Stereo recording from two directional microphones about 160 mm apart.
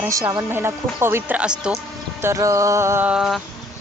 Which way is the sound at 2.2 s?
20° right (ahead or behind).